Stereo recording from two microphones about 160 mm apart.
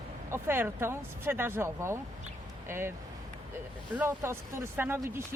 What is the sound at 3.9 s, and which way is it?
Speech, 10° right (ahead or behind).